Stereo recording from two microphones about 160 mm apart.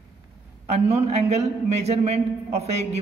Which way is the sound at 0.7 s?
40° right (ahead or behind).